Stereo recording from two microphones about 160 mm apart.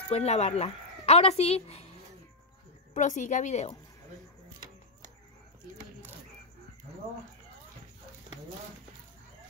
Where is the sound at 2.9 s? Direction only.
50° left (ahead or behind).